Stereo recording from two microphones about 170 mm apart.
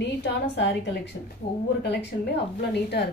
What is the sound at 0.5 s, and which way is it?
A woman's voice, 90° left.